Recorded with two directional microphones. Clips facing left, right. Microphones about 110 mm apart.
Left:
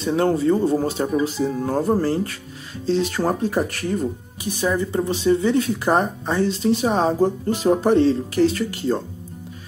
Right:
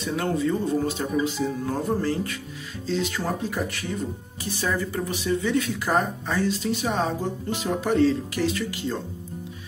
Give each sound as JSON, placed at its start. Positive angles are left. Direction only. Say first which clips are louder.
{"t": 0.0, "sound": "speech", "louder": "left 6 dB", "side_deg": 30}
{"t": 4.4, "sound": "speech", "louder": "left 5 dB", "side_deg": 15}